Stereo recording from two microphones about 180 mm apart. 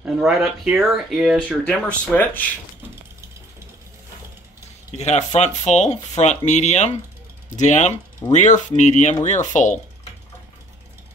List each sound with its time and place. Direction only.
0.0 s speech: centre (ahead or behind)
4.9 s speech: 40° left (ahead or behind)